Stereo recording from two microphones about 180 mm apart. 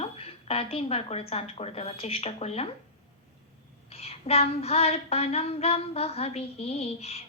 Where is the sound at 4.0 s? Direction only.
35° left (ahead or behind).